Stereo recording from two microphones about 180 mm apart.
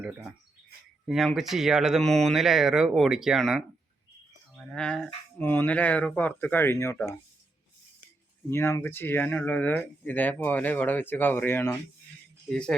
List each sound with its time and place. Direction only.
0.0 s speech: 10° right (ahead or behind); by 7.1 s 15° left (ahead or behind)
8.4 s speech: 15° left (ahead or behind)